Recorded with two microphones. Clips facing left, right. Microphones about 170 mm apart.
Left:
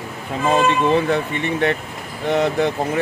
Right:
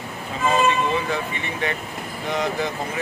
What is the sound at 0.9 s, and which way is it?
Speech, 60° left (ahead or behind).